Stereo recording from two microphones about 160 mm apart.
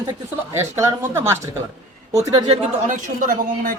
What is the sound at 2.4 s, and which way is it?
Speech, 40° right (ahead or behind).